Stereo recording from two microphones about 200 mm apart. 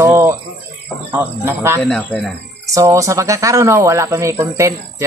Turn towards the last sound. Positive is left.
turn(degrees=-15)  # may be behind; listen again after turning